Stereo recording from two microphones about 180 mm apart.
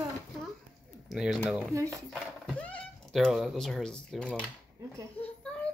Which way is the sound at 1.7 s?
15° right (ahead or behind).